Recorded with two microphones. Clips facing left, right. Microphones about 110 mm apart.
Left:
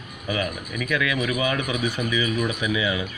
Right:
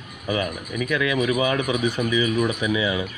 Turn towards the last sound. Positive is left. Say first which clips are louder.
# right 2 dB
turn(degrees=-30)  # may be behind; listen again after turning